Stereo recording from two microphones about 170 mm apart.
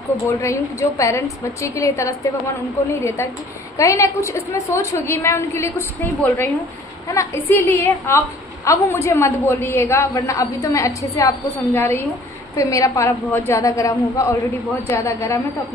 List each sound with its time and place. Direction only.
0.3 s a woman's voice: 15° left (ahead or behind)